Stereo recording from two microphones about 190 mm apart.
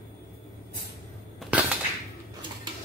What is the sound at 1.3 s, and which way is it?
Cap gun, 5° right (ahead or behind).